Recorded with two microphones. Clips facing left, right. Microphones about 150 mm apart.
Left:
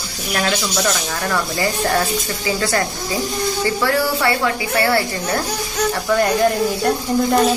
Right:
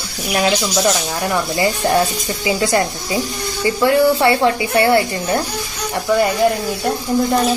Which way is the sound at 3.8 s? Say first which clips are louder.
Right 7 dB; 20° right (ahead or behind).